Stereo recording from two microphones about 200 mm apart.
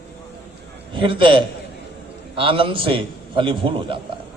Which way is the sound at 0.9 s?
25° right (ahead or behind).